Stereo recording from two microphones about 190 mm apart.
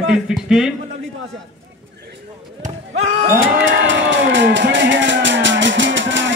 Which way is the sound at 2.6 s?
35° right (ahead or behind).